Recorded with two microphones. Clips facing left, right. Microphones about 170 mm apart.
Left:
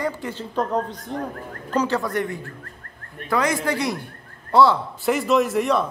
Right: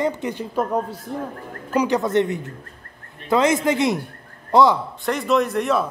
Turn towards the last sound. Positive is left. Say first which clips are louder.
# even
turn(degrees=0)  # may be behind; listen again after turning